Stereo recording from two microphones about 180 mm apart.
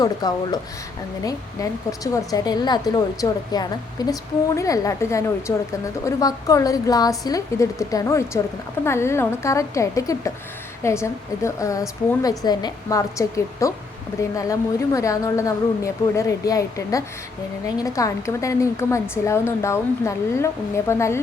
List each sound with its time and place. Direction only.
0.0 s a woman's voice: 20° left (ahead or behind)